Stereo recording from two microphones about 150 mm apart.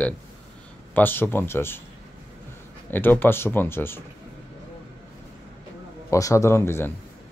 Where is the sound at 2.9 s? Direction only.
15° left (ahead or behind).